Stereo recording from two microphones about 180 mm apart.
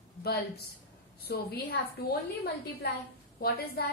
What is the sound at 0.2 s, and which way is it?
A woman's voice, 60° left (ahead or behind).